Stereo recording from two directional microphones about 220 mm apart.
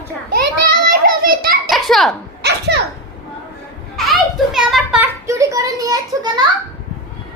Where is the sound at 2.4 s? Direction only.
50° right (ahead or behind).